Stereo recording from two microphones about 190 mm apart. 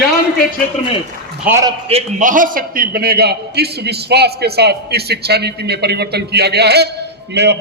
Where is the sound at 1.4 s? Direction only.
15° right (ahead or behind).